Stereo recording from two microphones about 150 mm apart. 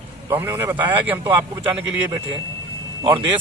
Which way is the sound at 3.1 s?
30° right (ahead or behind).